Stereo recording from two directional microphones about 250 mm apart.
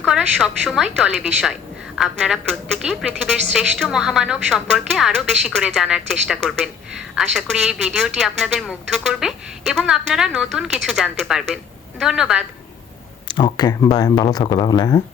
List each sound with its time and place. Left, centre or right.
0.0 s speech: centre
13.2 s speech: centre